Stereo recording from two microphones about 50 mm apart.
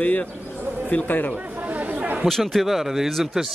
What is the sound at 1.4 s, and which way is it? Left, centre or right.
Chatter, right.